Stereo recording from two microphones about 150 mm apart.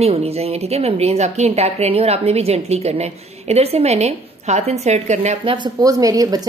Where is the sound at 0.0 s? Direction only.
40° right (ahead or behind).